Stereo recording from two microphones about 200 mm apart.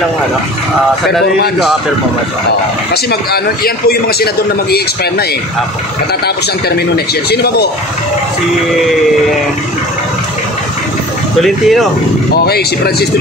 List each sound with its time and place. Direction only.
2.9 s a man's voice: 50° left (ahead or behind)
7.2 s a man's voice: 55° left (ahead or behind)
11.4 s speech: centre (ahead or behind)
12.4 s a man's voice: 55° left (ahead or behind)